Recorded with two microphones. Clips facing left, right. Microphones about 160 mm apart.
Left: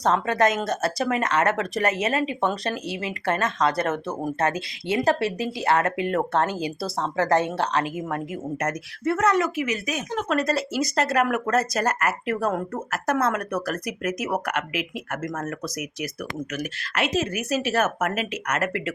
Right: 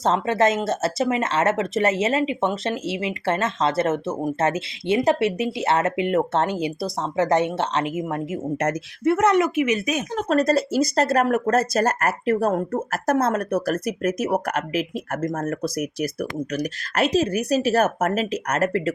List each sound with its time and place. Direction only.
0.0 s speech: 25° right (ahead or behind)
10.2 s speech: 40° right (ahead or behind)